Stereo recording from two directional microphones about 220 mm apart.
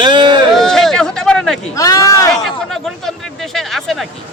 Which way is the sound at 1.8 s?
15° left (ahead or behind).